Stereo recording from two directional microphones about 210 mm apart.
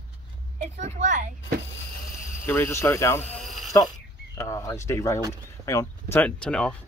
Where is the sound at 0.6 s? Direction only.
35° right (ahead or behind).